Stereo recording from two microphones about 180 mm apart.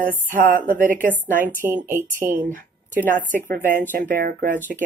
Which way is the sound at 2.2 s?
50° right (ahead or behind).